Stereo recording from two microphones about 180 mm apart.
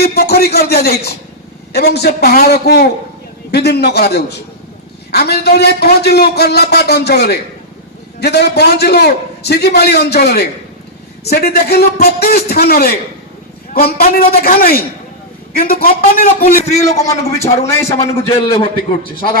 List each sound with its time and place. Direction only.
0.0 s a man's voice: 60° left (ahead or behind)
16.7 s a man's voice: 20° left (ahead or behind)
17.2 s a man's voice: 35° left (ahead or behind)
17.7 s a man's voice: 15° left (ahead or behind)
17.9 s a man's voice: 35° left (ahead or behind)